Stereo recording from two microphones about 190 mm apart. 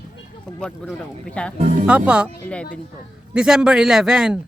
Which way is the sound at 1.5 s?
35° right (ahead or behind).